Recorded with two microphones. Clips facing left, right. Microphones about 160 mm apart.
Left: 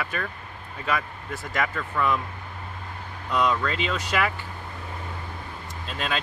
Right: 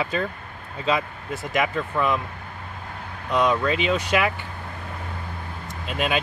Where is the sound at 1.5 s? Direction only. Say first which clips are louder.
Right 4 dB; 20° right (ahead or behind).